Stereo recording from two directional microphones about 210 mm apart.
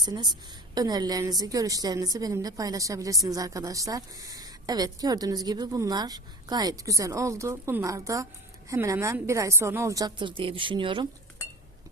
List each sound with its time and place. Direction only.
0.0 s a woman's voice: 20° right (ahead or behind)